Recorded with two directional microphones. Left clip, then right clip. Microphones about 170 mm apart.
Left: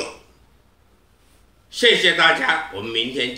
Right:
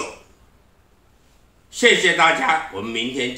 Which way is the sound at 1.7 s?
20° right (ahead or behind).